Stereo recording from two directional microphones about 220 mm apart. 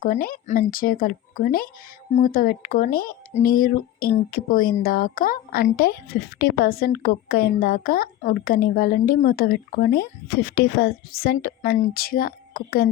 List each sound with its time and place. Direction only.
0.0 s speech: 40° left (ahead or behind)